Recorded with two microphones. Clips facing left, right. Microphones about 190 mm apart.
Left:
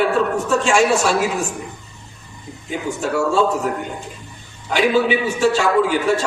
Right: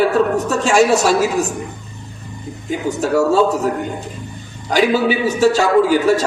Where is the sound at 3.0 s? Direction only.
40° right (ahead or behind).